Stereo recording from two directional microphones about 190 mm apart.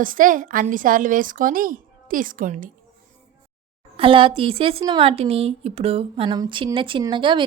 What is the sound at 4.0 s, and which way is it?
Speech, 30° right (ahead or behind).